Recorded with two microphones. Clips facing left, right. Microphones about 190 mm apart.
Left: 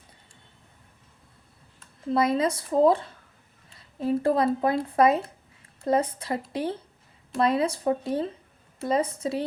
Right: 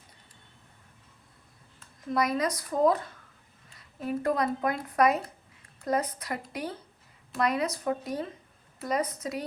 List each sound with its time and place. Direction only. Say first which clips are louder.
2.0 s speech: left 4 dB; 25° left (ahead or behind)